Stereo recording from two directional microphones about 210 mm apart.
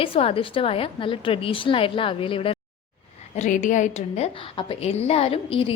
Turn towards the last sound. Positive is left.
turn(degrees=25)  # may be behind; listen again after turning